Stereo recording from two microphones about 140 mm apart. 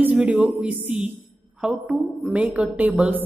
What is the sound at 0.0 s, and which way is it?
A man's voice, 10° right (ahead or behind).